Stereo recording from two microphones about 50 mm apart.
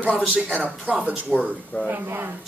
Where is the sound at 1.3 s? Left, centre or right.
Left.